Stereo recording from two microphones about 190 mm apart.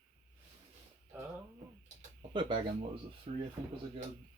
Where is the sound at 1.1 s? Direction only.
10° right (ahead or behind).